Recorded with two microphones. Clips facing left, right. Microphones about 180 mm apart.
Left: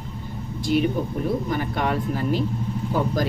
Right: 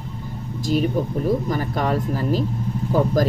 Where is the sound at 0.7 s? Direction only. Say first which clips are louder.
Right 1 dB; 40° right (ahead or behind).